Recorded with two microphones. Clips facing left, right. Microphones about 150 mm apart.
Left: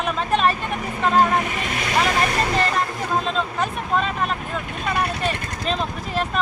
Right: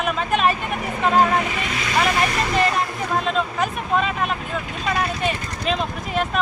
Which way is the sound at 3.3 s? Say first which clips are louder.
Right 1 dB; 5° right (ahead or behind).